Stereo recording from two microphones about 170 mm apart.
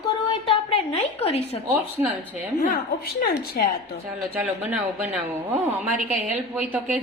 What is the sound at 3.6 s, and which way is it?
Speech, 60° left (ahead or behind).